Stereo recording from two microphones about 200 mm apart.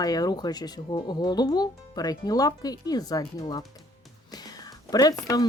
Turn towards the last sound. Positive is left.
turn(degrees=15)  # may be behind; listen again after turning